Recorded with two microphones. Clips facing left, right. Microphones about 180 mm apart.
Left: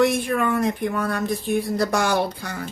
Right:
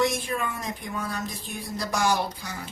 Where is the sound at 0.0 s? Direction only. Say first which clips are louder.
Left 7 dB; 60° left (ahead or behind).